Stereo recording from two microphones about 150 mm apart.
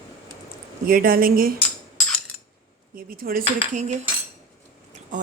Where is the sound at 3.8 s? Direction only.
50° right (ahead or behind).